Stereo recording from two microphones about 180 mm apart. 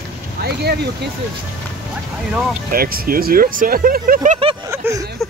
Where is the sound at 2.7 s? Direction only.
55° right (ahead or behind).